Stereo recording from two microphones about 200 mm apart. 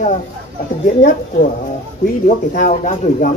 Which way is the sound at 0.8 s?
40° left (ahead or behind).